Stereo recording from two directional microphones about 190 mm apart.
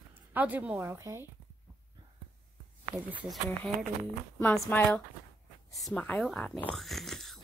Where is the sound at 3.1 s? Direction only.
10° right (ahead or behind).